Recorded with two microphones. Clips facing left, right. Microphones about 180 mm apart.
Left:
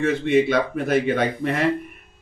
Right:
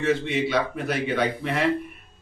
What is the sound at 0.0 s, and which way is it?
Speech, 50° left (ahead or behind).